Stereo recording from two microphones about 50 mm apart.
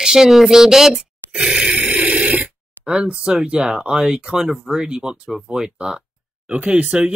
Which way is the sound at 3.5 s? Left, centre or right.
Centre.